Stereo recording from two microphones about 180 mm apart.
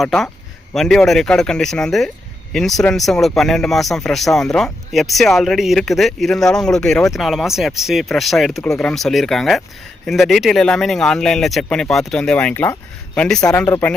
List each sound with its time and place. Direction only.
0.0 s speech: centre (ahead or behind)